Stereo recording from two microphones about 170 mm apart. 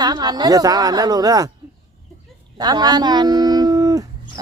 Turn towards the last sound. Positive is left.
turn(degrees=-20)  # may be behind; listen again after turning